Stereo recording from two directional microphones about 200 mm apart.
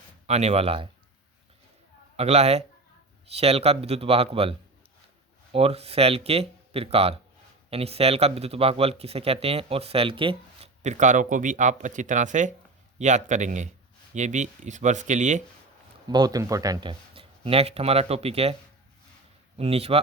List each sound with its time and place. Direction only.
0.3 s speech: 30° right (ahead or behind)
2.1 s speech: 30° right (ahead or behind)
16.0 s speech: 20° right (ahead or behind)
19.5 s speech: 30° right (ahead or behind)